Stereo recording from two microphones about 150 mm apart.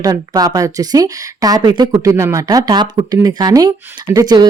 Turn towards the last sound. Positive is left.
turn(degrees=-25)  # may be behind; listen again after turning